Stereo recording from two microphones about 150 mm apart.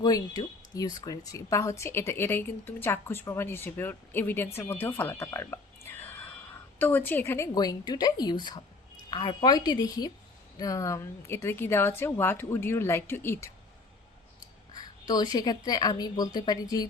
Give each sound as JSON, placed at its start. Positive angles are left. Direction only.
{"t": 0.0, "sound": "a woman's voice", "side_deg": 25}
{"t": 14.7, "sound": "a woman's voice", "side_deg": 30}